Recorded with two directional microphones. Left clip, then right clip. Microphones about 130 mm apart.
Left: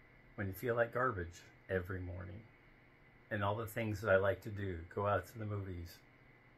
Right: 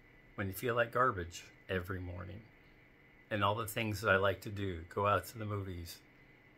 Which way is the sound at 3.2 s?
30° right (ahead or behind).